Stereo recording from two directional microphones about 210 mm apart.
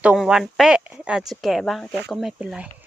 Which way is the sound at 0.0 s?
5° right (ahead or behind).